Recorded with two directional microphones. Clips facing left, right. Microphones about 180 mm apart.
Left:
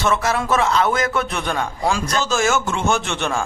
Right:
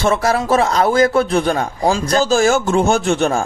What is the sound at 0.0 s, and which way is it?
A man's voice, 35° right (ahead or behind).